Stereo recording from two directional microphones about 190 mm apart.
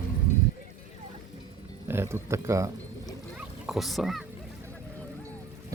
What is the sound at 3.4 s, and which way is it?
Speech, 5° right (ahead or behind).